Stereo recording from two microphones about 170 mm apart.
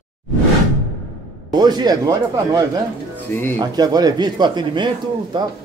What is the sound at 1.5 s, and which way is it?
Speech, 25° right (ahead or behind).